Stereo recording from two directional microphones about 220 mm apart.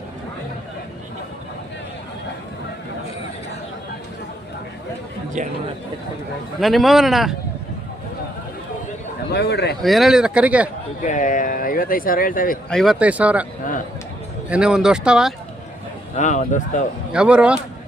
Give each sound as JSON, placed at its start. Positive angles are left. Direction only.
{"t": 5.4, "sound": "speech", "side_deg": -35}
{"t": 6.6, "sound": "speech", "side_deg": 0}
{"t": 9.3, "sound": "a man's voice", "side_deg": 50}
{"t": 9.8, "sound": "speech", "side_deg": 0}
{"t": 11.0, "sound": "speech", "side_deg": 35}
{"t": 12.7, "sound": "speech", "side_deg": 0}
{"t": 14.5, "sound": "speech", "side_deg": -5}
{"t": 16.1, "sound": "speech", "side_deg": 35}
{"t": 17.1, "sound": "speech", "side_deg": -5}